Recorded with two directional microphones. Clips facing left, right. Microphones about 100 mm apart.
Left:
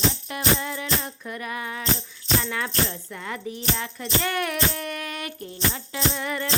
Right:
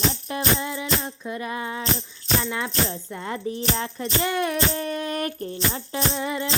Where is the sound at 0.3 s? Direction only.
25° right (ahead or behind).